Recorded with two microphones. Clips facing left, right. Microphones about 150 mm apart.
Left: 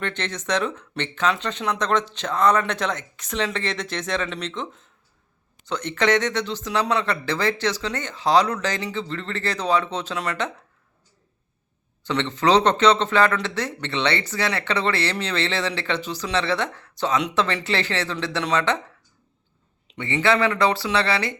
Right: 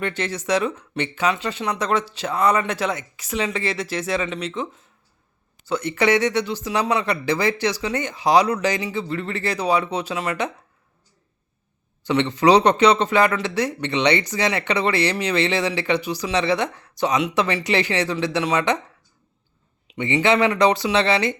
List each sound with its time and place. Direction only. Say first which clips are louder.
0.0 s speech: right 3 dB; 10° right (ahead or behind)
12.0 s speech: right 4 dB; 15° right (ahead or behind)
20.0 s speech: right 2 dB; 15° right (ahead or behind)